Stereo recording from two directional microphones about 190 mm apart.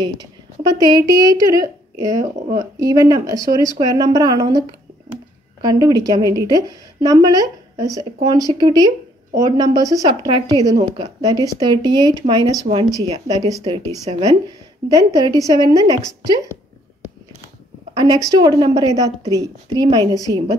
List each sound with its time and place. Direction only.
0.0 s a woman's voice: 20° right (ahead or behind)
17.9 s a woman's voice: 20° right (ahead or behind)